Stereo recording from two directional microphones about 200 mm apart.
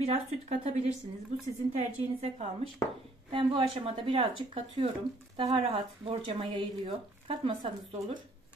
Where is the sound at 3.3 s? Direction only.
25° right (ahead or behind).